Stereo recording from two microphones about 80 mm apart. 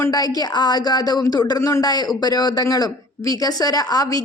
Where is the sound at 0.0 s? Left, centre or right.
Left.